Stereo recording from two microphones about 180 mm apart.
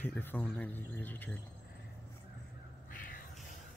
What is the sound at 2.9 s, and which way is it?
Cat, 50° left (ahead or behind).